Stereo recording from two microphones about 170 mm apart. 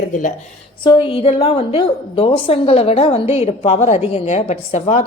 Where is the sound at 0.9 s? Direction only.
30° left (ahead or behind).